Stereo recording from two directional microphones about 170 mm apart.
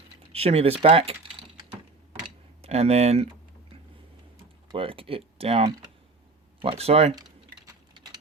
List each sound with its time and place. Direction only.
0.3 s speech: 35° right (ahead or behind)
2.6 s speech: 35° right (ahead or behind)
4.7 s speech: 30° right (ahead or behind)